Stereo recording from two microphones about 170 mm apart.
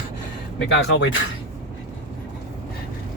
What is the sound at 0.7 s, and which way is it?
Speech, 90° left.